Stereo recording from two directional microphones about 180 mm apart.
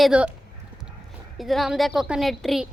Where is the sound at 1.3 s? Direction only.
Centre (ahead or behind).